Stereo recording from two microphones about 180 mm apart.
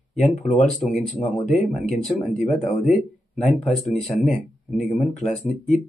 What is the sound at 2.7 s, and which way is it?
Speech, centre (ahead or behind).